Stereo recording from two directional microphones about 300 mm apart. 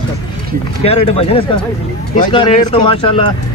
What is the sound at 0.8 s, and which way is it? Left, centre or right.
Speech, centre.